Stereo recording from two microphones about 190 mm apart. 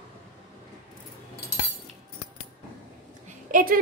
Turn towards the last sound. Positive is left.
turn(degrees=-45)  # may be behind; listen again after turning